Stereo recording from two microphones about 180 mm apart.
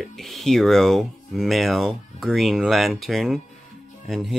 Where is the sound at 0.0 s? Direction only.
Centre (ahead or behind).